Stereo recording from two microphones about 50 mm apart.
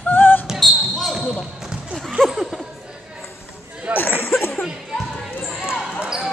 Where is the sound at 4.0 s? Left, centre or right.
Left.